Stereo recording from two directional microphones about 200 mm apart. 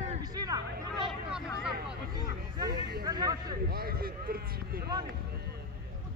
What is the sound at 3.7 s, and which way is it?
Speech, 50° right (ahead or behind).